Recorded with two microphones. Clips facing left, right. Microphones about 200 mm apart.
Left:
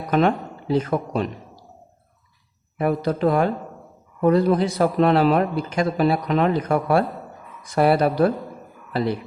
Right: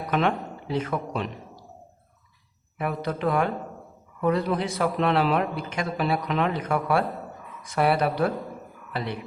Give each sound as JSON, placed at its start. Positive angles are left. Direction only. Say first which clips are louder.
{"t": 0.0, "sound": "speech", "louder": "left 5 dB", "side_deg": 35}
{"t": 2.7, "sound": "a man's voice", "louder": "left 7 dB", "side_deg": 40}